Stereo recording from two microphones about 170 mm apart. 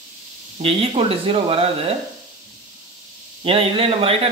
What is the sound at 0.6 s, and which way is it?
Speech, 35° right (ahead or behind).